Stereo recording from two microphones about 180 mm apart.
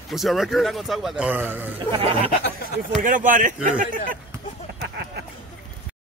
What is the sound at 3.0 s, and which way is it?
Speech, 45° right (ahead or behind).